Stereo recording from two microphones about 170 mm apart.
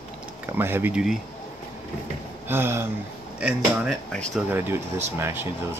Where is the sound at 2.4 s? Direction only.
15° right (ahead or behind); by 4.4 s centre (ahead or behind).